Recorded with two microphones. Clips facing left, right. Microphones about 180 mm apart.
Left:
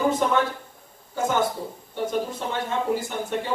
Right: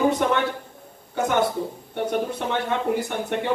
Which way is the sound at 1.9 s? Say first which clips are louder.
Right 1 dB; 65° right (ahead or behind).